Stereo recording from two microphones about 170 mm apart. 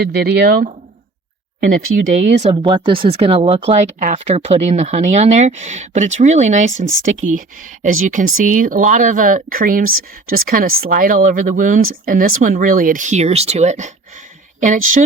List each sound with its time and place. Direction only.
0.0 s speech: 70° right (ahead or behind)
1.6 s speech: 50° right (ahead or behind)
2.4 s speech: 35° right (ahead or behind); by 15.0 s 50° right (ahead or behind)